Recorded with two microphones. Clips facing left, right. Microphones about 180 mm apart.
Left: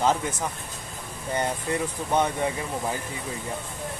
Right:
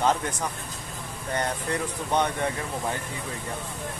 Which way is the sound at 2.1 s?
5° left (ahead or behind).